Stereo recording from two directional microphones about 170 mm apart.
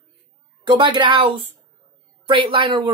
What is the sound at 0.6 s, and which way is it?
Speech, 25° right (ahead or behind).